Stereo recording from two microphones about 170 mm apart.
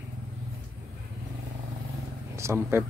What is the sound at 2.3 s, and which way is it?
Speech, 15° right (ahead or behind).